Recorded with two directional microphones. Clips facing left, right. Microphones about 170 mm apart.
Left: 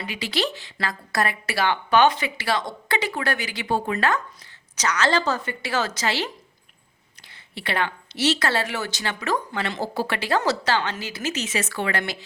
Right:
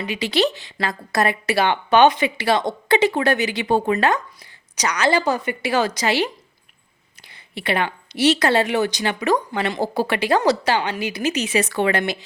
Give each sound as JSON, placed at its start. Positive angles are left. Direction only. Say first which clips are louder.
{"t": 0.0, "sound": "speech", "louder": "right 6 dB", "side_deg": -20}